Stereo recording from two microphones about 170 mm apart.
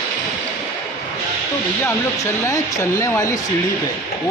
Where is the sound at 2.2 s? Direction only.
20° left (ahead or behind).